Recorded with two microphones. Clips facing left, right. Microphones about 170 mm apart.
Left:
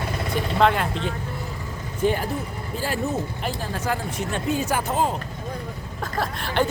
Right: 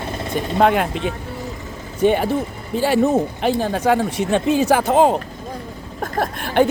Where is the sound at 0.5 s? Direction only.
55° right (ahead or behind).